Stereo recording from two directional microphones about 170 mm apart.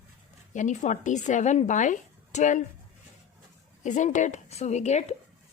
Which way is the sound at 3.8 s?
45° left (ahead or behind).